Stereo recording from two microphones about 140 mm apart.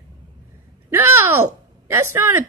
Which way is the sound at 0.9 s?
15° right (ahead or behind).